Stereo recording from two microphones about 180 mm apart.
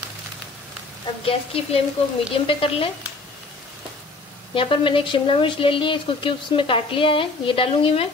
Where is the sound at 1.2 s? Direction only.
30° left (ahead or behind).